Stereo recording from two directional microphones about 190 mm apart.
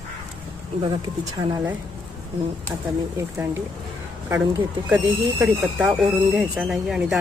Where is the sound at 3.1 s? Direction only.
15° right (ahead or behind).